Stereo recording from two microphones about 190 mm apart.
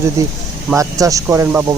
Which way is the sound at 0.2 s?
15° right (ahead or behind).